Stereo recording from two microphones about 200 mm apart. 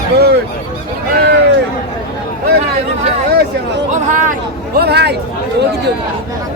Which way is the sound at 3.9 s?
40° right (ahead or behind).